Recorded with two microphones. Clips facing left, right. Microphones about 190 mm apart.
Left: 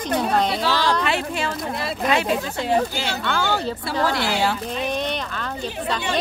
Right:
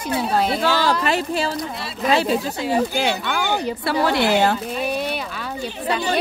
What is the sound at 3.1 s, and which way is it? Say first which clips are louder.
Speech: even; 15° right (ahead or behind).